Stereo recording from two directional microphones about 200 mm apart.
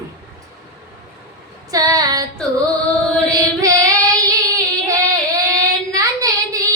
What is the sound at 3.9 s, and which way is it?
Child singing, 15° right (ahead or behind).